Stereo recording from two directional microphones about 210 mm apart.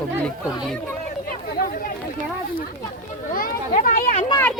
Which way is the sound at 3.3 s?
40° left (ahead or behind).